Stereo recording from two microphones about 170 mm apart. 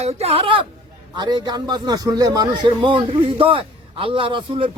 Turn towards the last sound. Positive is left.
turn(degrees=-30)  # may be behind; listen again after turning